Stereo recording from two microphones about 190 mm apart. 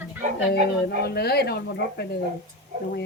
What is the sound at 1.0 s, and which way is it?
Speech, 55° left (ahead or behind).